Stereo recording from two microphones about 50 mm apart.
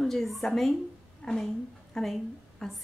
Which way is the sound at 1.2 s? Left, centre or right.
Centre.